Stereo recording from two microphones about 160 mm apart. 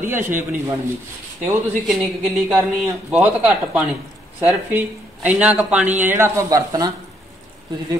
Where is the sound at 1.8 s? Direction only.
5° right (ahead or behind).